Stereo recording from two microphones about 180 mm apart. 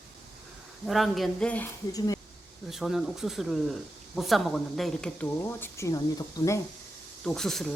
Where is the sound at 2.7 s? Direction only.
Centre (ahead or behind); by 6.6 s 20° left (ahead or behind).